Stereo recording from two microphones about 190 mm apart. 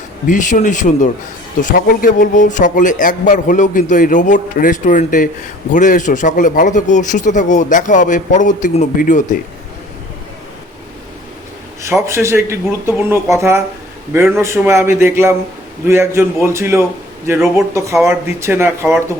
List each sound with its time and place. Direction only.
0.3 s a man's voice: 40° left (ahead or behind)
11.8 s speech: 15° right (ahead or behind)
18.1 s speech: 15° right (ahead or behind)